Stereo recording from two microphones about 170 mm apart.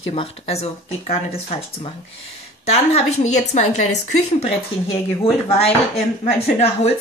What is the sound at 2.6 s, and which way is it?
Speech, 40° left (ahead or behind).